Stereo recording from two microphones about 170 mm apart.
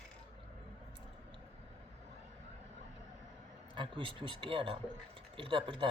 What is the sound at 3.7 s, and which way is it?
Speech, 30° right (ahead or behind).